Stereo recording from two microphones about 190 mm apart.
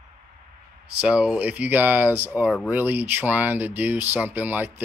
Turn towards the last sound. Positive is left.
turn(degrees=-10)  # may be behind; listen again after turning